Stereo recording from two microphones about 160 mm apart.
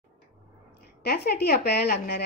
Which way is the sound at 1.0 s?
85° left.